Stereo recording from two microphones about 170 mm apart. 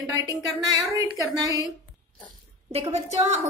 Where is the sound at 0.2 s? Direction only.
25° right (ahead or behind).